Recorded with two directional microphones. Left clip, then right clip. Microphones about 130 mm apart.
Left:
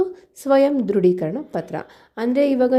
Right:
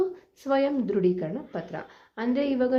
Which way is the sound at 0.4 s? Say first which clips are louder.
Left 8 dB; 50° left (ahead or behind).